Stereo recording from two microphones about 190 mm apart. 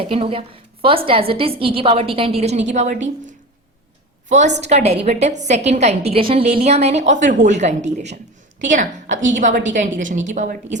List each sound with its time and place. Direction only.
0.0 s a woman's voice: 30° right (ahead or behind)
4.4 s a woman's voice: 40° right (ahead or behind)